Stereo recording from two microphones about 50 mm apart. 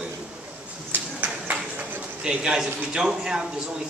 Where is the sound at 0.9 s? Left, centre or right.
Right.